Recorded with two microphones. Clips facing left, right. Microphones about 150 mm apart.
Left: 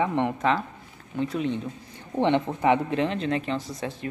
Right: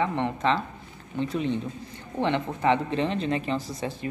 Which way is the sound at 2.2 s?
15° left (ahead or behind).